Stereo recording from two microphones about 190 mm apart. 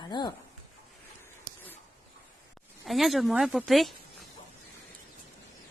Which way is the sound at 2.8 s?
Centre (ahead or behind).